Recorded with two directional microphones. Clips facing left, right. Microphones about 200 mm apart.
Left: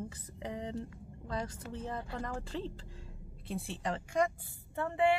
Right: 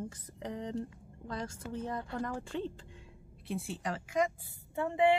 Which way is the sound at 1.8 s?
5° left (ahead or behind).